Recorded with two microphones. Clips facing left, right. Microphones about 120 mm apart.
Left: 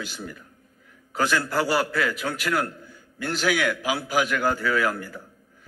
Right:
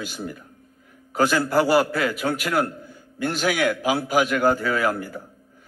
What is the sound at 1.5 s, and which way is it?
Speech, centre (ahead or behind).